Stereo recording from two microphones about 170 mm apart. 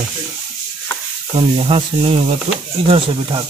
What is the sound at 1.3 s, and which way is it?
Speech, 35° right (ahead or behind).